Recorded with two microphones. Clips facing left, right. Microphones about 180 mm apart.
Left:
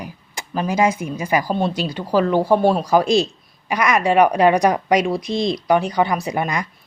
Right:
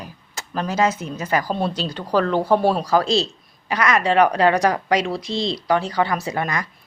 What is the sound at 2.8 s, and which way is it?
Speech, 15° left (ahead or behind).